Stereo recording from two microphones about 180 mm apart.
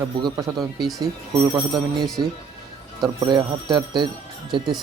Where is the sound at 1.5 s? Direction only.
25° right (ahead or behind).